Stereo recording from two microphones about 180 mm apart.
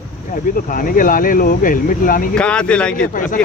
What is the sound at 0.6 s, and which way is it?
Speech, 50° left (ahead or behind).